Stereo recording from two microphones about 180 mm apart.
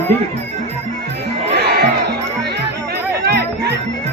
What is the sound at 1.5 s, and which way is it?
Music, 65° right (ahead or behind).